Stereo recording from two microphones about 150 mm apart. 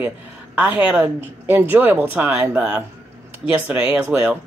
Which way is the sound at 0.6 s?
10° right (ahead or behind).